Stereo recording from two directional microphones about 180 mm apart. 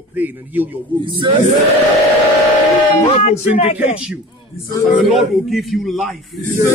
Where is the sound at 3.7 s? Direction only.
5° right (ahead or behind).